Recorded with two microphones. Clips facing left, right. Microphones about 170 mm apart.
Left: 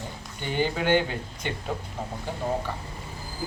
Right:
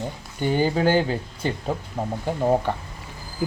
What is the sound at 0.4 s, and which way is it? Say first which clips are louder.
Speech: right 5 dB; 40° right (ahead or behind).